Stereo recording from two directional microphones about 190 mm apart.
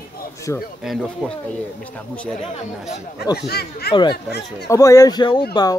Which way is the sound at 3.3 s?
55° left (ahead or behind).